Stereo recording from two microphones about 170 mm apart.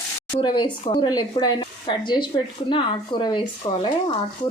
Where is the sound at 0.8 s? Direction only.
30° left (ahead or behind).